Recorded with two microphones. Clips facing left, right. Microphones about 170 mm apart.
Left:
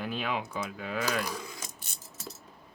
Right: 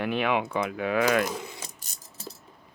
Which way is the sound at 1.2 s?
25° right (ahead or behind).